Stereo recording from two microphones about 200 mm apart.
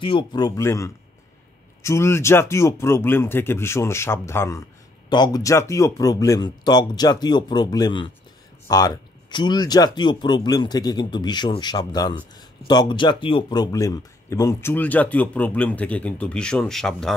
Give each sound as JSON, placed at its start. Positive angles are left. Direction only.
{"t": 0.0, "sound": "speech", "side_deg": 25}